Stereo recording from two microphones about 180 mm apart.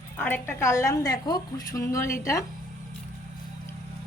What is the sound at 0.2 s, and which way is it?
A woman's voice, 10° left (ahead or behind).